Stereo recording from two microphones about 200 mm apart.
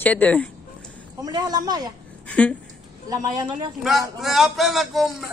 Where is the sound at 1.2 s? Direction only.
20° right (ahead or behind).